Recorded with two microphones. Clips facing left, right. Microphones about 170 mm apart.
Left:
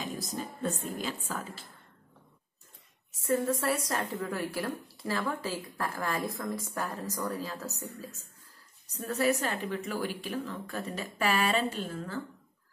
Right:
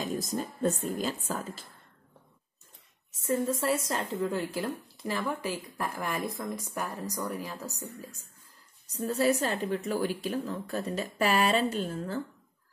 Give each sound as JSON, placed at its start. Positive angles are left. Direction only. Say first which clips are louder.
{"t": 0.0, "sound": "a woman's voice", "louder": "right 4 dB", "side_deg": -45}
{"t": 3.2, "sound": "a woman's voice", "louder": "even", "side_deg": -20}
{"t": 9.7, "sound": "speech", "louder": "right 4 dB", "side_deg": -45}